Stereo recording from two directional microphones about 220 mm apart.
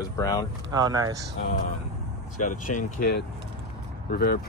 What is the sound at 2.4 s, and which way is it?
Speech, 35° left (ahead or behind).